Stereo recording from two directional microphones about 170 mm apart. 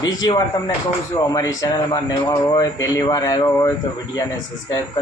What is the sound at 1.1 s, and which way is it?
Speech, 20° left (ahead or behind).